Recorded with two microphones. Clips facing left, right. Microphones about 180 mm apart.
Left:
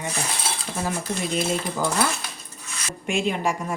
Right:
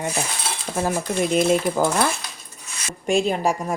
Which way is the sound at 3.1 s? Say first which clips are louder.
Right 4 dB; 35° right (ahead or behind).